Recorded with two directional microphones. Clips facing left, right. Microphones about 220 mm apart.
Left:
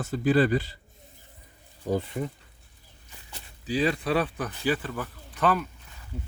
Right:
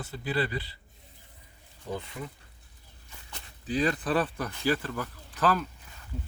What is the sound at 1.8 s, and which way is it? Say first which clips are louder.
Speech: left 8 dB; 35° left (ahead or behind).